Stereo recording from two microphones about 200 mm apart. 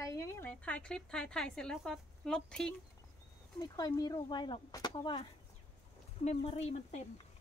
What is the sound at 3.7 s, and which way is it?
Speech, 20° left (ahead or behind).